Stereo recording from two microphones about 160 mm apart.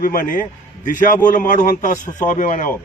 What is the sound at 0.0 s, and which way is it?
A man's voice, 60° left (ahead or behind).